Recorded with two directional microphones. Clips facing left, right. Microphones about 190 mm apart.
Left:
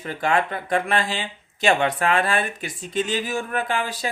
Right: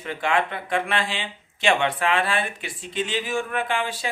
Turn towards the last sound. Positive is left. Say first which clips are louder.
# left 1 dB
turn(degrees=40)  # may be behind; listen again after turning